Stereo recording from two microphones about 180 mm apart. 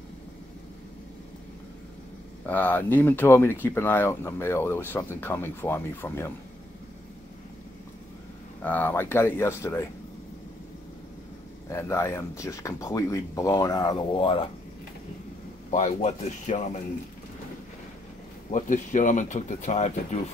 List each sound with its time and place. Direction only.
2.4 s speech: 10° left (ahead or behind)
8.6 s speech: 10° left (ahead or behind)
11.7 s speech: 15° left (ahead or behind)
15.7 s speech: 40° left (ahead or behind)
18.5 s speech: 45° left (ahead or behind)